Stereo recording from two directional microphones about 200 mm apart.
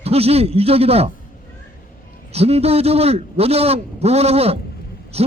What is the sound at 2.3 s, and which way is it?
A man's voice, 30° right (ahead or behind).